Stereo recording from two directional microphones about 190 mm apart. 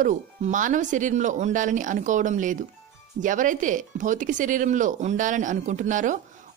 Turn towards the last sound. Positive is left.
turn(degrees=-40)  # may be behind; listen again after turning